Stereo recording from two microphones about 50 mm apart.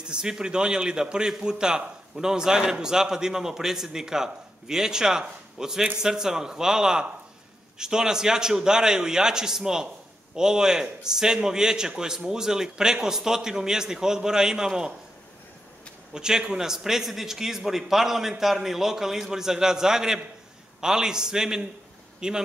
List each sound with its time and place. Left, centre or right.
0.0 s a man's voice: centre
16.1 s a man's voice: centre